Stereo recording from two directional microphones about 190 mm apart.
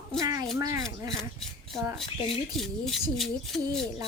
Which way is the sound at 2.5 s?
Centre (ahead or behind).